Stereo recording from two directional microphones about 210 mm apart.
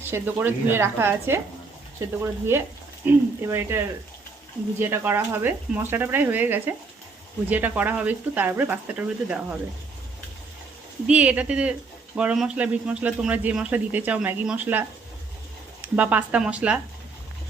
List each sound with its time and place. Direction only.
0.0 s a man's voice: 10° right (ahead or behind)
11.0 s a man's voice: 5° right (ahead or behind)